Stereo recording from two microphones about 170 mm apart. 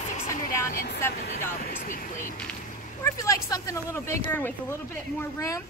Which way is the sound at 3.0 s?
20° left (ahead or behind).